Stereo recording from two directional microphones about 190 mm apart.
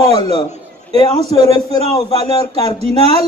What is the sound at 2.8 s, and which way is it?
Speech, 35° right (ahead or behind).